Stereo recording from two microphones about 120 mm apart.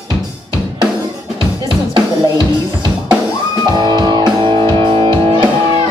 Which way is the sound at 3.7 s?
35° right (ahead or behind).